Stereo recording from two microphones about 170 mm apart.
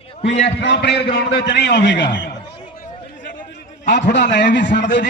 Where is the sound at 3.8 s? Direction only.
90° left.